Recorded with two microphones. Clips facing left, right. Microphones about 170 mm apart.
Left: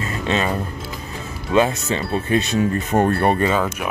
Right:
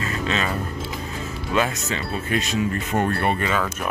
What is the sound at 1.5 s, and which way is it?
Speech, 30° left (ahead or behind).